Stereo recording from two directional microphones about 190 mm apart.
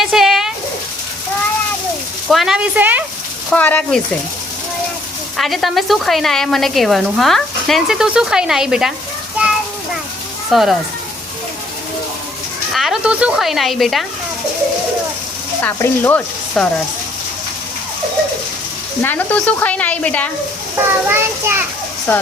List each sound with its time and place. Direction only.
0.0 s a sound: centre (ahead or behind)
2.3 s a child's voice: centre (ahead or behind)
3.5 s speech: 10° left (ahead or behind)
5.4 s a woman's voice: centre (ahead or behind)
10.5 s a woman's voice: centre (ahead or behind)
12.7 s a woman's voice: centre (ahead or behind)
15.6 s speech: 10° left (ahead or behind)
19.0 s speech: 10° left (ahead or behind)
20.7 s a child's voice: 10° right (ahead or behind)